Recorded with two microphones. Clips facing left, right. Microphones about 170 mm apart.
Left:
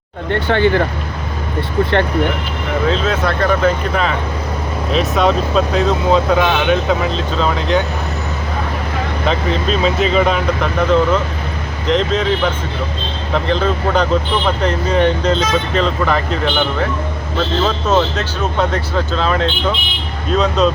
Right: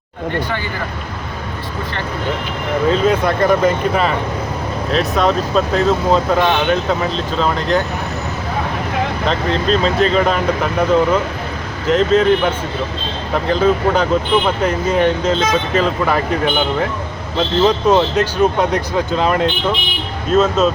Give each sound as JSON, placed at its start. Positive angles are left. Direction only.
{"t": 0.4, "sound": "speech", "side_deg": 70}
{"t": 2.9, "sound": "speech", "side_deg": -10}
{"t": 4.9, "sound": "speech", "side_deg": 0}
{"t": 9.3, "sound": "speech", "side_deg": 5}
{"t": 17.8, "sound": "speech", "side_deg": -10}